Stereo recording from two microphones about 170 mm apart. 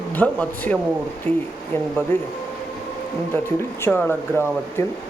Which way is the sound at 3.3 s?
15° left (ahead or behind).